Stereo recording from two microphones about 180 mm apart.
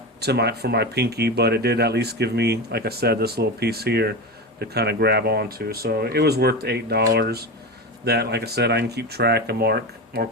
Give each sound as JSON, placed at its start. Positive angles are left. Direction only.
{"t": 0.2, "sound": "speech", "side_deg": -65}